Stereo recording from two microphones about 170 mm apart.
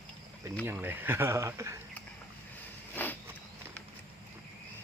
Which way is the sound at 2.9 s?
10° left (ahead or behind).